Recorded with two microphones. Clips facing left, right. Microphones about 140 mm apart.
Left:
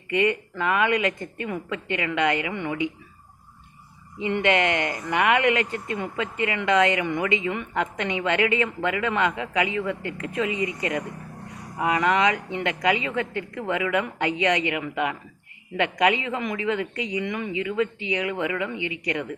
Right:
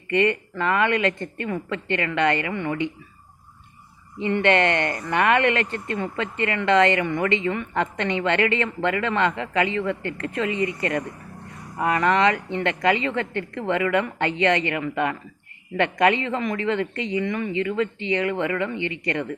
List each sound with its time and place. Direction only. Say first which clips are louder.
0.1 s speech: right 2 dB; 10° left (ahead or behind)
4.2 s speech: right 2 dB; 10° left (ahead or behind)